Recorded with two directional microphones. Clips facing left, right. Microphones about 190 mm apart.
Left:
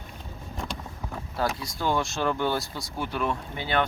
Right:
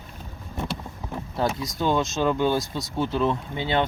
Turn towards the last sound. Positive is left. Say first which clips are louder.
# right 2 dB
turn(degrees=-20)  # may be behind; listen again after turning